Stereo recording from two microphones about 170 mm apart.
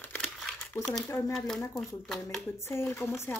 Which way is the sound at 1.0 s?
15° left (ahead or behind).